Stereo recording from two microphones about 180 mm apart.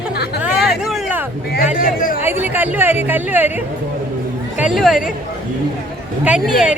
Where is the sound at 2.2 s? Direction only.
10° right (ahead or behind).